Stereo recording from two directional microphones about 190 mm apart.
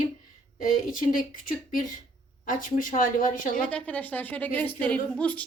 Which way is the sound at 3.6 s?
5° left (ahead or behind).